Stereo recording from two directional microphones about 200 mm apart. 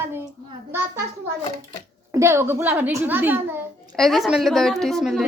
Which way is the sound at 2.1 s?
15° right (ahead or behind).